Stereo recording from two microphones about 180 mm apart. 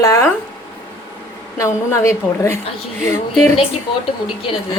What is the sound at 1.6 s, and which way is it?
A woman's voice, 15° left (ahead or behind).